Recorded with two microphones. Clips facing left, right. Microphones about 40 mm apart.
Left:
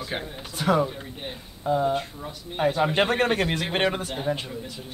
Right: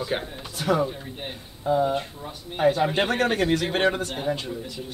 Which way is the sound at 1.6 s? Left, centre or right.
Centre.